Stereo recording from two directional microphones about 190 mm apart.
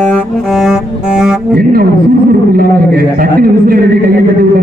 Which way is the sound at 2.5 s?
50° right (ahead or behind).